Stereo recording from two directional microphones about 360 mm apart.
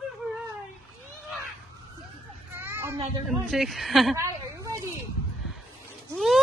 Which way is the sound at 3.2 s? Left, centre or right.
Centre.